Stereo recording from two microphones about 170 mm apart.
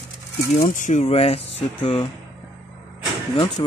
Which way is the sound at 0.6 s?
50° left (ahead or behind).